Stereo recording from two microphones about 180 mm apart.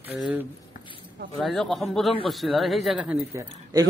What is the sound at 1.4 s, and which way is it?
Speech, centre (ahead or behind).